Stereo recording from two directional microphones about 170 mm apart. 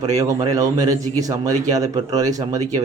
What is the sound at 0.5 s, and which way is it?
A man's voice, 20° right (ahead or behind).